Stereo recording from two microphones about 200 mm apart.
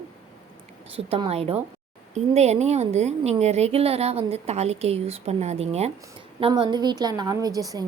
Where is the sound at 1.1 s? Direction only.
30° right (ahead or behind).